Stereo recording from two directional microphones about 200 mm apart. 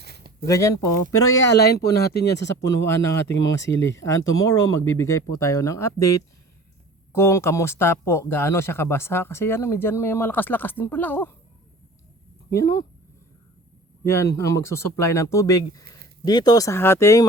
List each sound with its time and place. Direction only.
0.0 s a sound: 55° right (ahead or behind)
0.4 s speech: 15° left (ahead or behind)
1.5 s speech: 50° left (ahead or behind)
2.8 s speech: 15° left (ahead or behind)
3.3 s speech: 65° left (ahead or behind)
3.8 s speech: 15° left (ahead or behind)
7.1 s speech: 15° left (ahead or behind)
12.5 s speech: 15° left (ahead or behind)
14.0 s speech: 15° left (ahead or behind)